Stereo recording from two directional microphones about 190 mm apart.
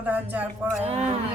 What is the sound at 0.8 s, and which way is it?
Speech, 35° right (ahead or behind).